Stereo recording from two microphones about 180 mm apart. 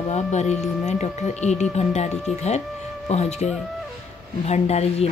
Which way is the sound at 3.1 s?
40° left (ahead or behind).